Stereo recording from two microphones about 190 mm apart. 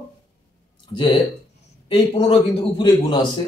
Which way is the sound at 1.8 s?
30° left (ahead or behind).